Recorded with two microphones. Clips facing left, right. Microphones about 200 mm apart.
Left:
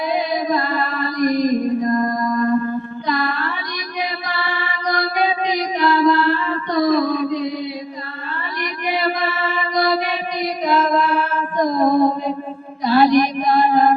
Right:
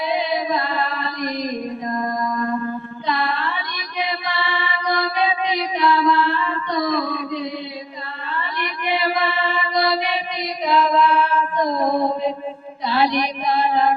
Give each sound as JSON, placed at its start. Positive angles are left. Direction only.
{"t": 0.2, "sound": "a sound", "side_deg": 45}
{"t": 3.1, "sound": "music", "side_deg": 45}
{"t": 4.3, "sound": "mantra", "side_deg": 45}
{"t": 8.6, "sound": "music", "side_deg": 45}
{"t": 12.8, "sound": "chant", "side_deg": 45}